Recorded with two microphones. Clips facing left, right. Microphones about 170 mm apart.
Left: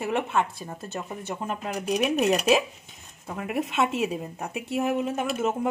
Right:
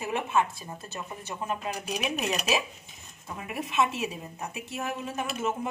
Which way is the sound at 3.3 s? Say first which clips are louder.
Left 6 dB; 60° left (ahead or behind).